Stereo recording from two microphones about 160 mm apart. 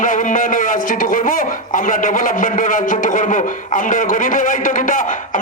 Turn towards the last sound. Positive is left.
turn(degrees=55)  # may be behind; listen again after turning